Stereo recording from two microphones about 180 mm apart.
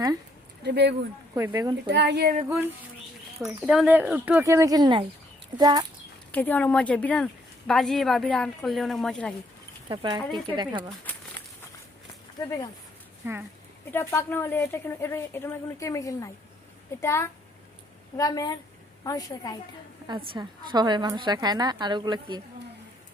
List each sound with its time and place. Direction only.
0.6 s speech: 65° right (ahead or behind)
1.4 s a woman's voice: 20° right (ahead or behind)
1.9 s speech: 70° right (ahead or behind)
2.5 s a woman's voice: 10° right (ahead or behind)
6.3 s speech: 10° left (ahead or behind)
9.9 s a woman's voice: 25° right (ahead or behind)
12.4 s a woman's voice: 20° left (ahead or behind)
13.2 s speech: 15° right (ahead or behind)
13.9 s a woman's voice: 15° left (ahead or behind)
20.3 s a woman's voice: 25° right (ahead or behind)